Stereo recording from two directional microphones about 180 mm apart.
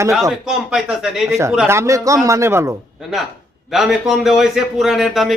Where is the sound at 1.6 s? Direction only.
15° right (ahead or behind).